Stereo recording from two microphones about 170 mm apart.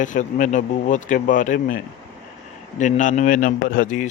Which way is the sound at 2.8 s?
45° left (ahead or behind).